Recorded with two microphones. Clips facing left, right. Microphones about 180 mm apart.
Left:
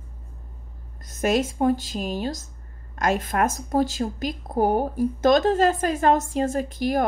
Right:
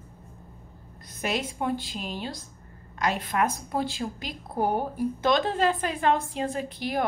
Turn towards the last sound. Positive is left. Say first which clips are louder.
# left 5 dB
turn(degrees=45)  # may be behind; listen again after turning